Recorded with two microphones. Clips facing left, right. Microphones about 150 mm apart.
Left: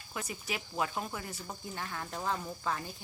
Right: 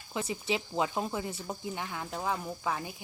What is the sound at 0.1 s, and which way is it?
Speech, 25° right (ahead or behind).